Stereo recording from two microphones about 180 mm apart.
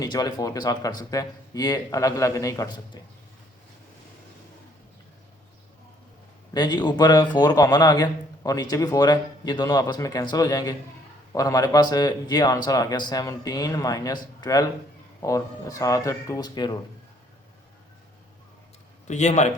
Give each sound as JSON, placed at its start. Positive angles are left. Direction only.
{"t": 0.0, "sound": "a man's voice", "side_deg": 20}
{"t": 6.5, "sound": "a man's voice", "side_deg": 25}
{"t": 19.0, "sound": "a man's voice", "side_deg": 40}